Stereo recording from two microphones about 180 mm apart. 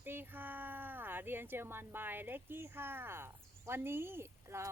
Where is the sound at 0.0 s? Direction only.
10° right (ahead or behind).